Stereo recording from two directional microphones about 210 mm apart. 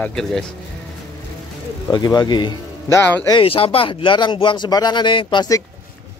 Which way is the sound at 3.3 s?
25° left (ahead or behind).